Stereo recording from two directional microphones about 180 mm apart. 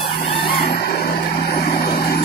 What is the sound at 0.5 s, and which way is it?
Vehicle, 60° left (ahead or behind).